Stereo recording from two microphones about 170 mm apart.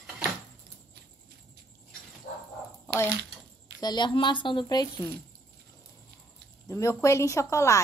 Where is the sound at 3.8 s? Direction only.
25° left (ahead or behind).